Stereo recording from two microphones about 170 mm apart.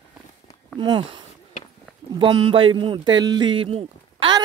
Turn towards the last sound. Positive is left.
turn(degrees=-30)  # may be behind; listen again after turning